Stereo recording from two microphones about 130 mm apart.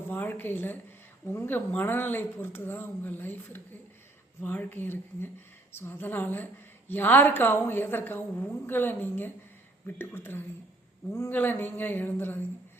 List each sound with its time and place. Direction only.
0.1 s a woman's voice: 15° left (ahead or behind)